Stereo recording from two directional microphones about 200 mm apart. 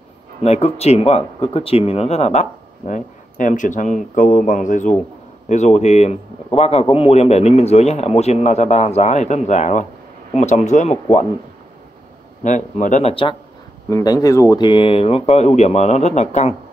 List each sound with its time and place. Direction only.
0.4 s a man's voice: 30° left (ahead or behind)
12.4 s a man's voice: 35° left (ahead or behind)
13.1 s speech: 25° left (ahead or behind)